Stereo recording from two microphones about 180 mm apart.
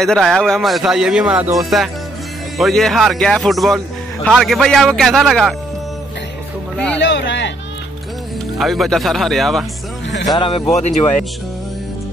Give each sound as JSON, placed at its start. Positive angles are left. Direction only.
{"t": 0.0, "sound": "speech", "side_deg": 0}
{"t": 7.0, "sound": "a sound", "side_deg": 80}
{"t": 8.5, "sound": "speech", "side_deg": 0}
{"t": 10.3, "sound": "speech", "side_deg": 25}